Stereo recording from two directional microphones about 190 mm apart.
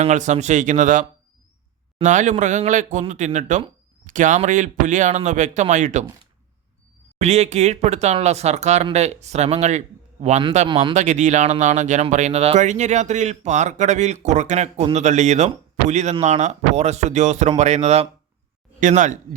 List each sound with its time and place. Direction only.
0.0 s a man's voice: 40° right (ahead or behind)
7.2 s a man's voice: 35° right (ahead or behind)